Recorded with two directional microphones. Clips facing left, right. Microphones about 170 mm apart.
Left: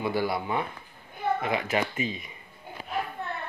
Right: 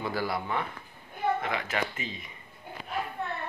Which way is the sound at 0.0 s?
20° left (ahead or behind).